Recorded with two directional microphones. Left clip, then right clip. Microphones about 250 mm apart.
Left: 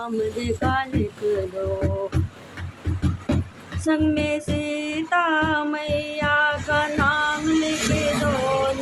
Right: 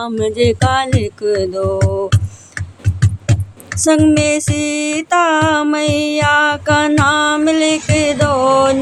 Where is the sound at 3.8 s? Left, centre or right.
Right.